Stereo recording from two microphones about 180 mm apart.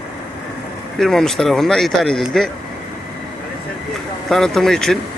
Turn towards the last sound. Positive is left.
turn(degrees=0)  # may be behind; listen again after turning